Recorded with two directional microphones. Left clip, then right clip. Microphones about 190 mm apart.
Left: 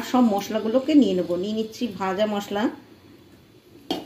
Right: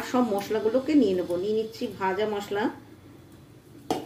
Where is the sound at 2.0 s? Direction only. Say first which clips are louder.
Left 3 dB; 45° left (ahead or behind).